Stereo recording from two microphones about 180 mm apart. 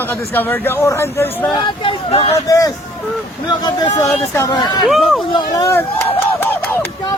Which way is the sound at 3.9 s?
15° left (ahead or behind).